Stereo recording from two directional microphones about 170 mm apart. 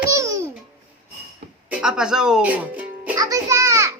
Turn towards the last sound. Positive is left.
turn(degrees=-20)  # may be behind; listen again after turning